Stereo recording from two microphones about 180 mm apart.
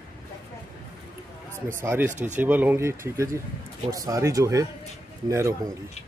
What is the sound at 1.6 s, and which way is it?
Speech, 15° right (ahead or behind).